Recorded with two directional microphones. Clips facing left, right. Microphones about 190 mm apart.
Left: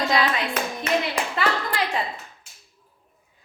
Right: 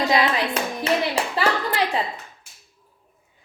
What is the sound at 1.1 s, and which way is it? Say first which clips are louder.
Clapping: right 2 dB; 30° right (ahead or behind).